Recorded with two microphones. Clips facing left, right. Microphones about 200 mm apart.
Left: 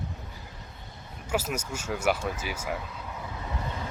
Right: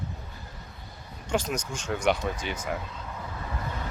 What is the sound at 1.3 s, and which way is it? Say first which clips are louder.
Speech: right 1 dB; 5° left (ahead or behind).